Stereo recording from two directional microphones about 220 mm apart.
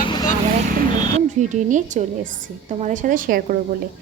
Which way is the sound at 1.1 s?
35° right (ahead or behind).